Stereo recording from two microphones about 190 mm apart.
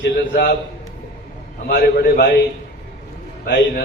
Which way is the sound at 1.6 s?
55° left (ahead or behind).